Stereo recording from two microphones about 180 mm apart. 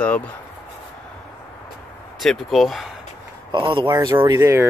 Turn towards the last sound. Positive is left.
turn(degrees=-15)  # may be behind; listen again after turning